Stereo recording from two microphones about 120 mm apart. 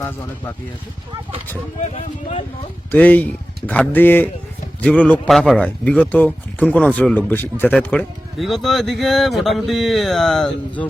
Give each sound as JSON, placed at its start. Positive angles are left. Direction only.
{"t": 0.0, "sound": "speech", "side_deg": 20}
{"t": 1.8, "sound": "speech", "side_deg": 65}
{"t": 2.9, "sound": "speech", "side_deg": 15}
{"t": 5.3, "sound": "speech", "side_deg": 0}
{"t": 5.5, "sound": "speech", "side_deg": 10}
{"t": 8.4, "sound": "speech", "side_deg": 0}